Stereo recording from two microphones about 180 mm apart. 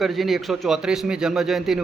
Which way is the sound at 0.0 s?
Centre (ahead or behind).